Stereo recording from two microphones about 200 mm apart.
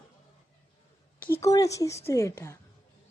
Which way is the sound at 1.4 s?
15° left (ahead or behind).